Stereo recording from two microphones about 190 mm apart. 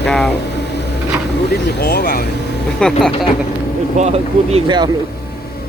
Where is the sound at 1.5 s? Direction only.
55° left (ahead or behind).